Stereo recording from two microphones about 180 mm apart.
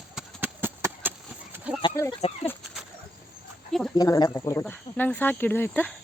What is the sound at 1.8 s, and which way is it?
Speech, 20° left (ahead or behind).